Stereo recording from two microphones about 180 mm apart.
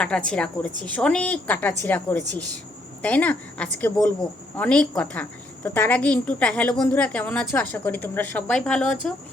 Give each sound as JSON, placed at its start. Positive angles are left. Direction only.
{"t": 0.3, "sound": "a woman's voice", "side_deg": 5}